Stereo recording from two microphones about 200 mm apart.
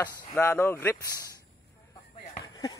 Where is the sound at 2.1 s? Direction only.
35° left (ahead or behind).